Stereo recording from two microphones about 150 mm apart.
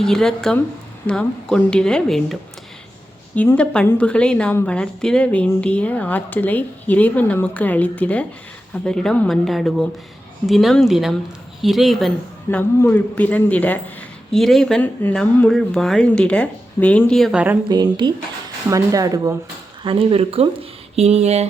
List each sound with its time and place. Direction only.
0.0 s a woman's voice: 5° left (ahead or behind)
17.7 s speech: 25° right (ahead or behind)
19.8 s speech: 35° right (ahead or behind)